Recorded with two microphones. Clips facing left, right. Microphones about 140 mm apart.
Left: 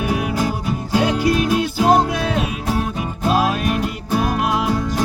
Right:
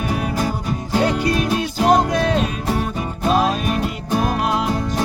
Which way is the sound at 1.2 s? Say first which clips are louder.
Left 2 dB; 5° left (ahead or behind).